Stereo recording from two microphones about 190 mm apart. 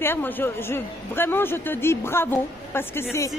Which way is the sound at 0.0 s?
10° left (ahead or behind).